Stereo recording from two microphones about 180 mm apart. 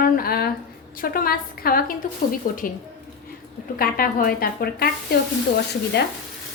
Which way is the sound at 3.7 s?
55° left (ahead or behind).